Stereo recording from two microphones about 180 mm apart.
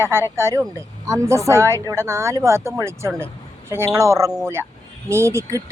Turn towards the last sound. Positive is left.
turn(degrees=-15)  # may be behind; listen again after turning